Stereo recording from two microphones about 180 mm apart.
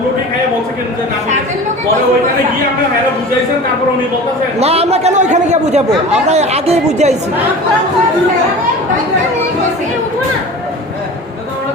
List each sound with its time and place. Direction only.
4.6 s a man's voice: 35° right (ahead or behind)